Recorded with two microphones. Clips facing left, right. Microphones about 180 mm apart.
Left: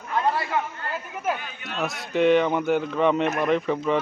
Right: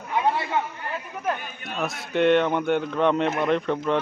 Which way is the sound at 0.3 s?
25° right (ahead or behind).